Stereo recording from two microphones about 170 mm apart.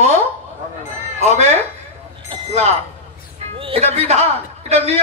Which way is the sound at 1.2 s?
40° right (ahead or behind).